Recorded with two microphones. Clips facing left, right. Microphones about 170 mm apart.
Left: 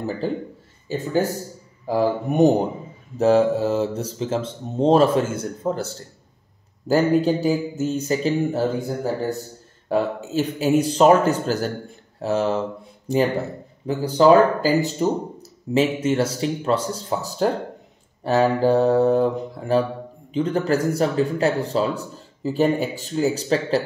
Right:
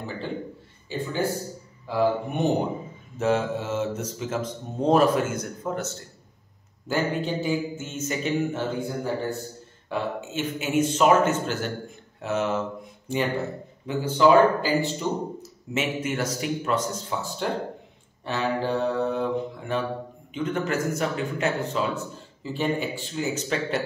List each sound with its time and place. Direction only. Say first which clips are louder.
0.2 s a man's voice: left 6 dB; 40° left (ahead or behind)
13.8 s speech: left 4 dB; 40° left (ahead or behind)